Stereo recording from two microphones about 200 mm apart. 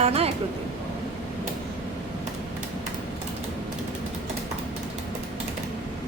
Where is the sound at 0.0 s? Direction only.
30° right (ahead or behind).